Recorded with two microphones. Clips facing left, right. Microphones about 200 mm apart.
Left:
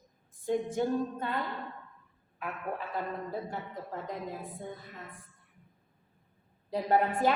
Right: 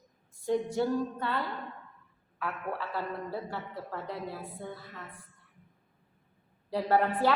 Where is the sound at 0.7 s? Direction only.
20° left (ahead or behind).